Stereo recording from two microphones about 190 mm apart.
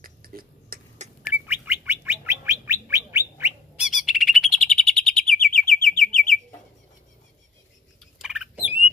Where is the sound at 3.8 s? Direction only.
Centre (ahead or behind).